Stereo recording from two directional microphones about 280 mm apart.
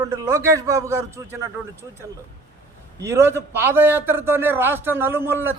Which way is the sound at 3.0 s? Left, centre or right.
Centre.